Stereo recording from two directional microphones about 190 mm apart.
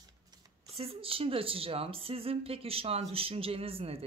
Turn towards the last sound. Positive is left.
turn(degrees=-30)  # may be behind; listen again after turning